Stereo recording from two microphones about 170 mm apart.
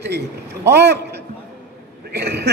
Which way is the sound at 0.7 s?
80° right.